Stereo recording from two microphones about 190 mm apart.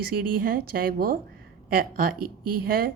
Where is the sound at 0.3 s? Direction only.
50° right (ahead or behind).